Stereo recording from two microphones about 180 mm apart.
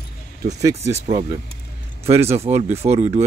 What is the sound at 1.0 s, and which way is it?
Speech, 35° right (ahead or behind).